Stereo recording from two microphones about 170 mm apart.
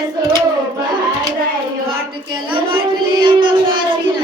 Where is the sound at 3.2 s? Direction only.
30° right (ahead or behind).